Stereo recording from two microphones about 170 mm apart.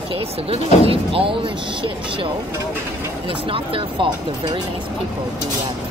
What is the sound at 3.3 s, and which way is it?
Speech, 30° right (ahead or behind).